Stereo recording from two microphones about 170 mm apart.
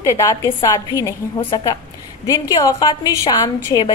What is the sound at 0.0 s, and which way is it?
A woman's voice, 20° left (ahead or behind).